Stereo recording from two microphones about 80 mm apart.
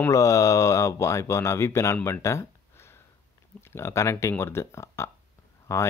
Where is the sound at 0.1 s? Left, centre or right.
Left.